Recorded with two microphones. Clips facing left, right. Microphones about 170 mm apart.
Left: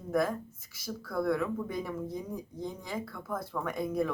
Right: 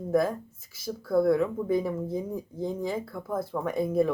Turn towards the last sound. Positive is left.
turn(degrees=-25)  # may be behind; listen again after turning